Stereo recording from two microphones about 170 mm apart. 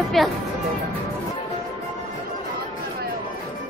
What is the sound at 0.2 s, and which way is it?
Speech, centre (ahead or behind).